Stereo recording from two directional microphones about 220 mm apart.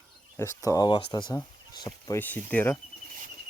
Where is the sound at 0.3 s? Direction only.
15° left (ahead or behind).